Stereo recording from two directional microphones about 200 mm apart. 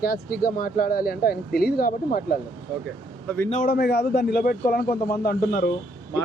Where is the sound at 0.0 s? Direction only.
45° left (ahead or behind).